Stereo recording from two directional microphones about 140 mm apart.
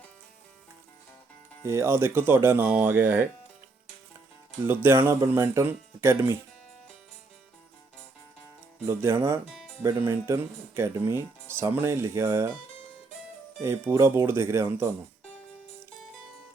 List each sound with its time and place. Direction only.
1.6 s speech: 20° right (ahead or behind)
4.6 s speech: 15° right (ahead or behind)
8.9 s speech: 15° right (ahead or behind)
13.6 s speech: 20° right (ahead or behind)